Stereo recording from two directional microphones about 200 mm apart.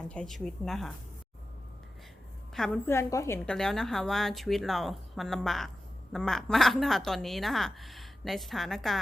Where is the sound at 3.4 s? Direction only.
Centre (ahead or behind).